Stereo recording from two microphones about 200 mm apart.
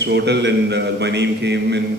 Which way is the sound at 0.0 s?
60° right (ahead or behind).